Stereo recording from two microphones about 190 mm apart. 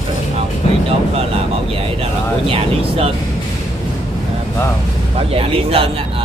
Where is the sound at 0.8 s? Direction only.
30° right (ahead or behind).